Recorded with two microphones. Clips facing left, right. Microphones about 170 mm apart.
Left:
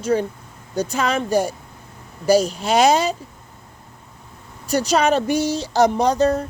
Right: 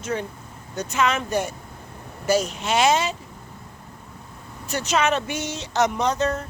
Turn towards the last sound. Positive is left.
turn(degrees=35)  # may be behind; listen again after turning